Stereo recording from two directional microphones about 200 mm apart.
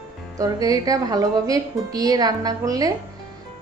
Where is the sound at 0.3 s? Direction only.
15° right (ahead or behind).